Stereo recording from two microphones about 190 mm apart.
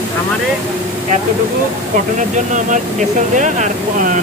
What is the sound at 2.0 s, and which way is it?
Speech, 40° right (ahead or behind).